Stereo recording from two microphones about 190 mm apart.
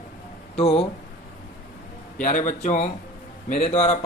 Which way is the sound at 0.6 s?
35° left (ahead or behind).